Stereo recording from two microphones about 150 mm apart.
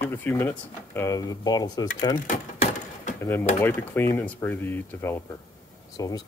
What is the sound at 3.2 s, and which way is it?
Speech, 15° left (ahead or behind).